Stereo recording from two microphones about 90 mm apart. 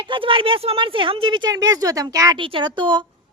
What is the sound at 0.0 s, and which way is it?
Speech, 75° right (ahead or behind).